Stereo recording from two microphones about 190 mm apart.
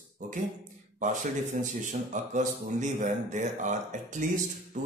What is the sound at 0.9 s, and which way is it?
A man's voice, 40° right (ahead or behind).